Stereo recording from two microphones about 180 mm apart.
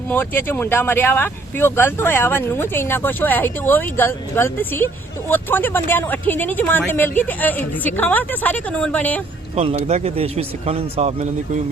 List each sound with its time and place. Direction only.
0.1 s speech: 10° left (ahead or behind)
9.6 s speech: 35° right (ahead or behind)